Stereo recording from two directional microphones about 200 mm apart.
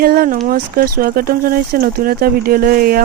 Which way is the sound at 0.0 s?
45° right (ahead or behind).